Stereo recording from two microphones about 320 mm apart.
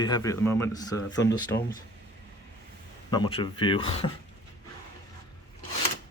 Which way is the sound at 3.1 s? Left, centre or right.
Centre.